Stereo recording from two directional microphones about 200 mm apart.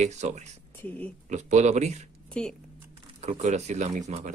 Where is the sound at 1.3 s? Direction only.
35° right (ahead or behind).